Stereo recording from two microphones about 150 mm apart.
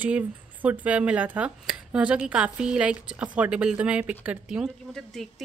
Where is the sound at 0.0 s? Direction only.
10° right (ahead or behind).